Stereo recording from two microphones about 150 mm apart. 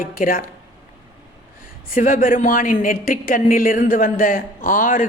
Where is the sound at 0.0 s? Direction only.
65° left (ahead or behind).